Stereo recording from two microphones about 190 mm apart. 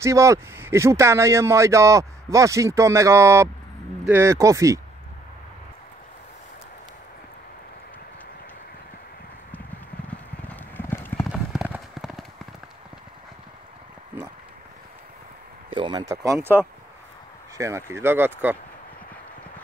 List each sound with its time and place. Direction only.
0.0 s speech: 15° right (ahead or behind)
10.0 s clip-clop: 10° left (ahead or behind)
11.2 s clip-clop: 5° right (ahead or behind)
15.7 s speech: 25° right (ahead or behind)
17.6 s speech: 15° right (ahead or behind)